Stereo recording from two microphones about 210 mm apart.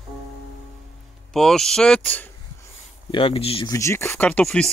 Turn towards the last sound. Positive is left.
turn(degrees=5)  # may be behind; listen again after turning